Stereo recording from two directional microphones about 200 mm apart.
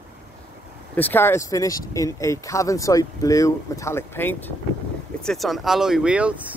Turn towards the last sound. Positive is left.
turn(degrees=-5)  # may be behind; listen again after turning